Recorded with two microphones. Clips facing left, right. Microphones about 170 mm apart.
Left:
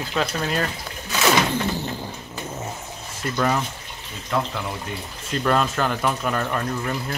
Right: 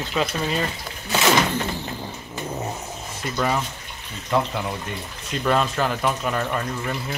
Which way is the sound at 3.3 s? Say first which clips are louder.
Left 1 dB; 5° right (ahead or behind).